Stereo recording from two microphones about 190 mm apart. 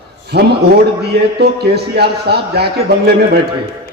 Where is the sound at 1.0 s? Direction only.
55° right (ahead or behind).